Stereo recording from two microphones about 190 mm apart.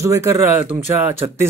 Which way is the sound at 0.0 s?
15° right (ahead or behind).